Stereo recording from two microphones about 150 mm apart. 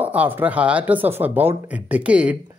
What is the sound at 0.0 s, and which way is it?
Speech, 10° right (ahead or behind).